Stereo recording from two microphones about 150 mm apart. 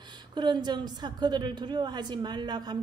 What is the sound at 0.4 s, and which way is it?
A woman's voice, 30° right (ahead or behind).